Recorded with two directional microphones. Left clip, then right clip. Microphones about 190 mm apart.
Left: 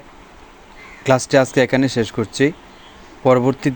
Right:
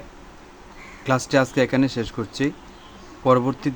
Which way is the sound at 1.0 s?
20° left (ahead or behind).